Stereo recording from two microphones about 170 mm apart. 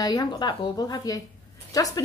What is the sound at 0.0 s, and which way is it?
A woman's voice, 25° left (ahead or behind).